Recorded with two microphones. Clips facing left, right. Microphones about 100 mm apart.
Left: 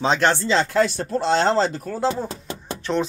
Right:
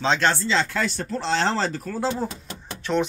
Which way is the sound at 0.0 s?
15° left (ahead or behind).